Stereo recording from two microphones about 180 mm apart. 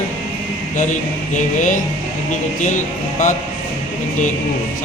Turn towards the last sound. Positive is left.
turn(degrees=45)  # may be behind; listen again after turning